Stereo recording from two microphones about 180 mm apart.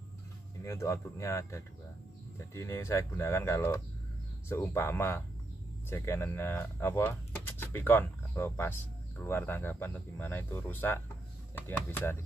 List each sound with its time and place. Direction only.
0.7 s speech: 15° left (ahead or behind)